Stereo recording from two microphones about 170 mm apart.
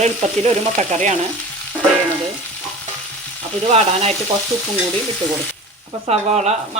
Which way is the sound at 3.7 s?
40° right (ahead or behind).